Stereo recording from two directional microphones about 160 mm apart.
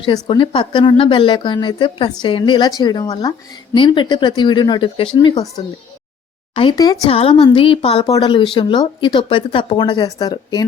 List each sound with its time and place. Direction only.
0.0 s a woman's voice: 30° left (ahead or behind)
6.5 s a woman's voice: 30° left (ahead or behind)
7.1 s a woman's voice: 35° left (ahead or behind)